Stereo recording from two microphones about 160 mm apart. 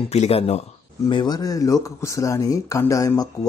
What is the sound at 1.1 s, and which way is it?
Speech, 25° left (ahead or behind).